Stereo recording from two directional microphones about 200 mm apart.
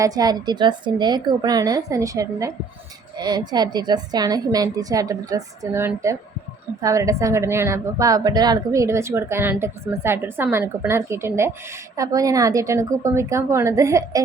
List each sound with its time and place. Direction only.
0.0 s a woman's voice: 20° right (ahead or behind)